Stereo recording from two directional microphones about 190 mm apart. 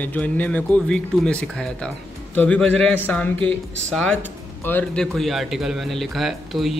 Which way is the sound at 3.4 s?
30° right (ahead or behind).